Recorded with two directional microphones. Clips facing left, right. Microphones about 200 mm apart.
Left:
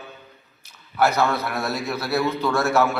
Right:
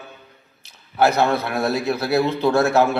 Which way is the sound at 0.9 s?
30° right (ahead or behind).